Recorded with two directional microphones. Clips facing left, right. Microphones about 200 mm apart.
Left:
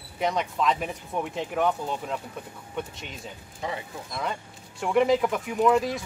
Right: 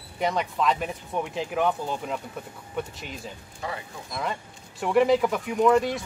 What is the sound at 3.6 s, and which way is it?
Speech, 20° left (ahead or behind).